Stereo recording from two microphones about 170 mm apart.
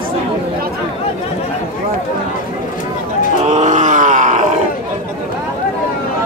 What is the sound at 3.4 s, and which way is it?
Groan, 45° right (ahead or behind).